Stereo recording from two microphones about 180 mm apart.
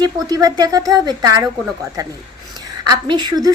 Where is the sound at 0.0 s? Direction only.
20° right (ahead or behind).